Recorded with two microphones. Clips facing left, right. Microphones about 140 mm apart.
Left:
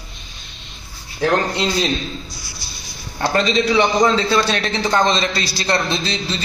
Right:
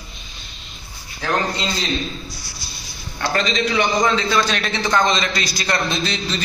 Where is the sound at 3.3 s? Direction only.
30° left (ahead or behind).